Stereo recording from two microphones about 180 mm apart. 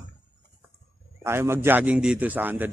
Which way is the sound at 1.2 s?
15° right (ahead or behind).